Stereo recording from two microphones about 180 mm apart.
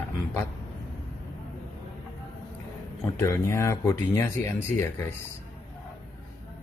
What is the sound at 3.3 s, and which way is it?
Speech, 15° left (ahead or behind).